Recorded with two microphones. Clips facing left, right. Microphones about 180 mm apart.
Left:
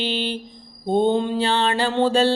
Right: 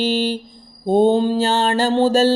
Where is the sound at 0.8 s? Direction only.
40° right (ahead or behind).